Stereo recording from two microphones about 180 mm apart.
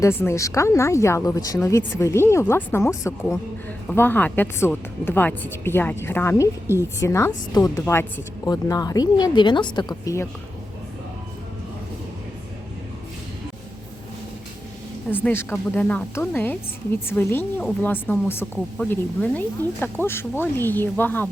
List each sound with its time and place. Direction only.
0.0 s speech: 15° left (ahead or behind)
9.9 s speech: 15° left (ahead or behind)
15.1 s speech: 10° left (ahead or behind)